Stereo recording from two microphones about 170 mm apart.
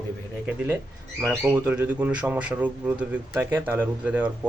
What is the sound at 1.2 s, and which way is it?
Speech, 15° right (ahead or behind).